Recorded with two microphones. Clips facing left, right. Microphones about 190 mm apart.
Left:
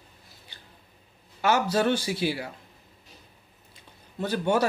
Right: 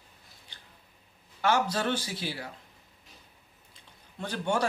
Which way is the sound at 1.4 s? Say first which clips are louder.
Left 4 dB; 10° left (ahead or behind).